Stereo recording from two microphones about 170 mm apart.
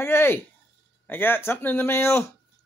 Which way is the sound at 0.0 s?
15° left (ahead or behind).